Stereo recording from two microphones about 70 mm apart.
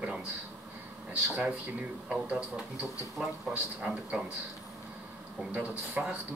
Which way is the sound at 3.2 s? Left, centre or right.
Centre.